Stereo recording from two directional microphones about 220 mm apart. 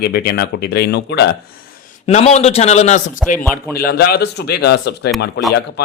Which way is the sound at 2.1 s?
30° left (ahead or behind).